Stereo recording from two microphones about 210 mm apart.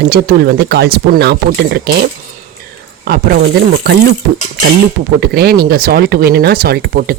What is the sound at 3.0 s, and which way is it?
Speech, 45° right (ahead or behind).